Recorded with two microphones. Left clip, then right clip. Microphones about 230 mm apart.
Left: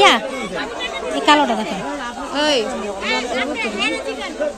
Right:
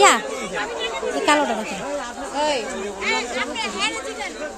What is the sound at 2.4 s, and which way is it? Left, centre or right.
Chatter, left.